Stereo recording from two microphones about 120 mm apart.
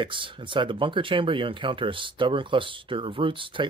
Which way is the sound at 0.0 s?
45° right (ahead or behind).